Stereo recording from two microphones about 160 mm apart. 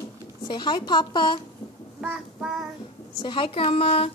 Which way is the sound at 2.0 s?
Centre (ahead or behind).